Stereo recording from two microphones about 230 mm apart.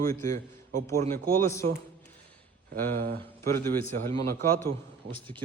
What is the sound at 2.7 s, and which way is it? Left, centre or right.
Speech, right.